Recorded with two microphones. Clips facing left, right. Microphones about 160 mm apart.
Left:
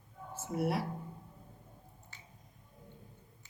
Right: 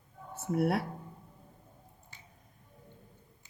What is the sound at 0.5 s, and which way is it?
Speech, 60° right (ahead or behind).